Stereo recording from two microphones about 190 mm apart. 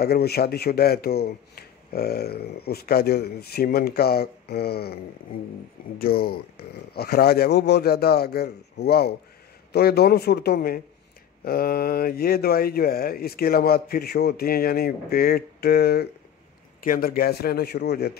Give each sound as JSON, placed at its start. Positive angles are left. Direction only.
{"t": 0.0, "sound": "a man's voice", "side_deg": 55}
{"t": 5.9, "sound": "a man's voice", "side_deg": 50}